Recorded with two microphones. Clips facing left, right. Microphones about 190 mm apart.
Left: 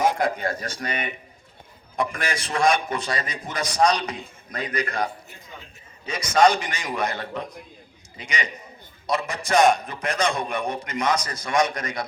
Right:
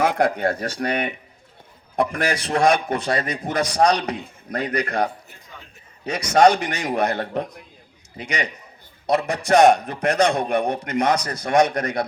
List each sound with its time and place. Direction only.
0.0 s a man's voice: 65° right (ahead or behind)